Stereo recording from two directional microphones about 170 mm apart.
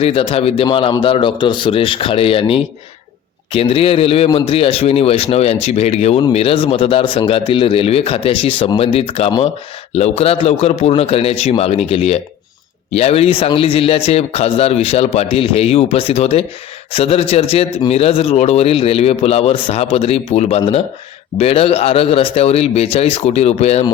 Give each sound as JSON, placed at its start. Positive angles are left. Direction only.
{"t": 0.0, "sound": "a man's voice", "side_deg": 35}